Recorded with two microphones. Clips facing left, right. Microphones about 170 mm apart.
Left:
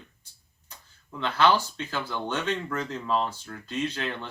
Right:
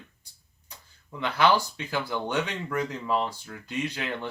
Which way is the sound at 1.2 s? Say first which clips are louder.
Even; 15° right (ahead or behind).